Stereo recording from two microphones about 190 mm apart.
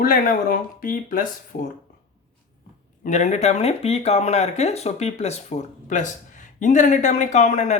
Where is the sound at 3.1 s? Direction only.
40° left (ahead or behind).